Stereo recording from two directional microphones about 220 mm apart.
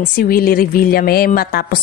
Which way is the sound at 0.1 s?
40° left (ahead or behind).